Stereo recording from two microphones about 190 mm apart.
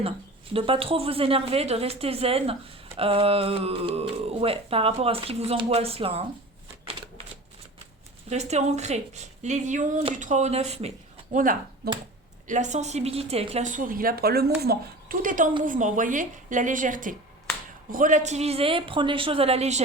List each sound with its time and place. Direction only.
0.5 s a woman's voice: 30° right (ahead or behind)
8.3 s a woman's voice: 35° right (ahead or behind)